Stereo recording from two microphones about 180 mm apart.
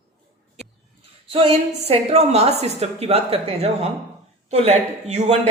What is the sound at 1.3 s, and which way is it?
A woman's voice, 35° right (ahead or behind).